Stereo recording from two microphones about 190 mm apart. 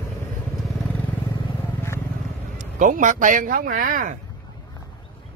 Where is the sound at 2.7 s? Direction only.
40° right (ahead or behind).